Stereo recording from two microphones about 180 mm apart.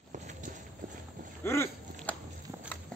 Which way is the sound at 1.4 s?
15° left (ahead or behind).